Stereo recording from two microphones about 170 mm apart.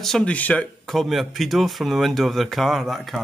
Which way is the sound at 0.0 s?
5° left (ahead or behind).